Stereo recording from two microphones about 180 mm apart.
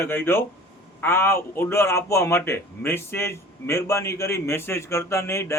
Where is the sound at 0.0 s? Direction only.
10° left (ahead or behind).